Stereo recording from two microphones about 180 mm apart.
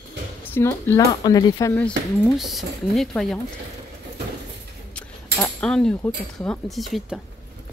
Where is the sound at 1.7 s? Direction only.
10° left (ahead or behind).